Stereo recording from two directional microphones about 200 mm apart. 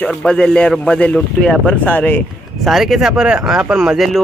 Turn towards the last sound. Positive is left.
turn(degrees=0)  # may be behind; listen again after turning